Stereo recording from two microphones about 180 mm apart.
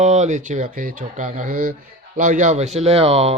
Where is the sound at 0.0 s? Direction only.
40° right (ahead or behind).